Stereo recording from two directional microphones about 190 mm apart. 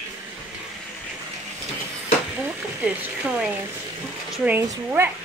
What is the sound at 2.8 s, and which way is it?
Speech, 5° right (ahead or behind).